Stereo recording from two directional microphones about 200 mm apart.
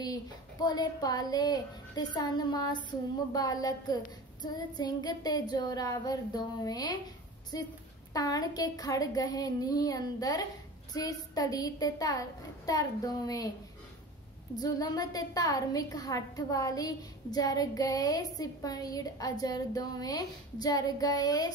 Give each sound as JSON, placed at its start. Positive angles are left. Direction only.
{"t": 0.0, "sound": "a woman's voice", "side_deg": 20}
{"t": 14.6, "sound": "a woman's voice", "side_deg": 20}